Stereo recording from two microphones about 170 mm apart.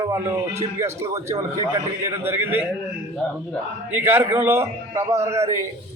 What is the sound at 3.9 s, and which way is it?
A man's voice, 10° right (ahead or behind).